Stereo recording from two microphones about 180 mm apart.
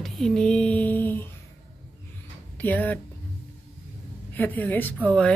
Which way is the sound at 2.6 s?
10° left (ahead or behind).